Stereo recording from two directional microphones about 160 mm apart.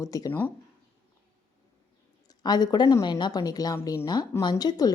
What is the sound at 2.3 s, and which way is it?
A woman's voice, 25° left (ahead or behind).